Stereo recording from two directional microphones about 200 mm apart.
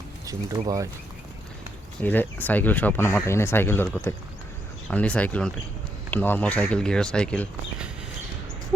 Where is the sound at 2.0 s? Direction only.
10° left (ahead or behind).